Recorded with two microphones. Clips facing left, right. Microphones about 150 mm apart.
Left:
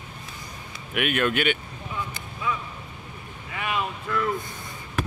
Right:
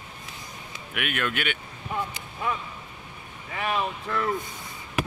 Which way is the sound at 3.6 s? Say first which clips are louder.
Right 1 dB; 35° right (ahead or behind).